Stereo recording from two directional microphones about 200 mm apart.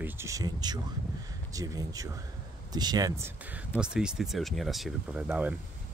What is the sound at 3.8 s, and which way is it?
Speech, 5° right (ahead or behind).